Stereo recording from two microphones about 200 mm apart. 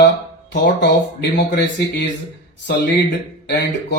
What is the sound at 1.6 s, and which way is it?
Speech, 60° left (ahead or behind).